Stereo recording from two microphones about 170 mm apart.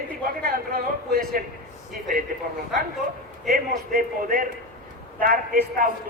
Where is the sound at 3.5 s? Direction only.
55° right (ahead or behind).